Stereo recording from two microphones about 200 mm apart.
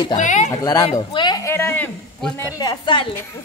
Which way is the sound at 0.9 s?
20° left (ahead or behind).